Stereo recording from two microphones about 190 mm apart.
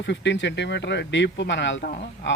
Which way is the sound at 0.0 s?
65° left (ahead or behind).